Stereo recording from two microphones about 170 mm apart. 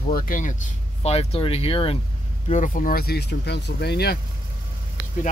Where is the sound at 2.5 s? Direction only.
50° left (ahead or behind); by 4.2 s 70° left (ahead or behind).